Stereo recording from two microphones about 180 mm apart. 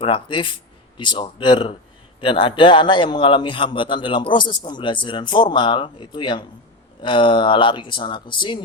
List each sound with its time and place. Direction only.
0.0 s a man's voice: 30° left (ahead or behind)